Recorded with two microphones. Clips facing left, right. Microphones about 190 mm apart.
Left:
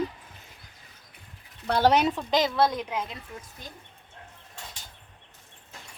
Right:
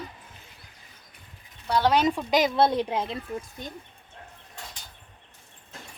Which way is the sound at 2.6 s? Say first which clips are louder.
Right 3 dB; 30° right (ahead or behind).